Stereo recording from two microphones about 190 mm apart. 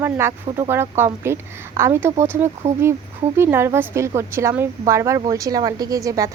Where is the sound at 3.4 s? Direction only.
10° right (ahead or behind).